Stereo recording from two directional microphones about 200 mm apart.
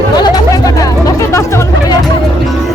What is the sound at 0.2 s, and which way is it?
Music, 20° left (ahead or behind).